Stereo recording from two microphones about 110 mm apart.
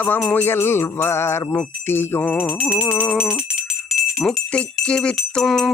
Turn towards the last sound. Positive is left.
turn(degrees=5)  # may be behind; listen again after turning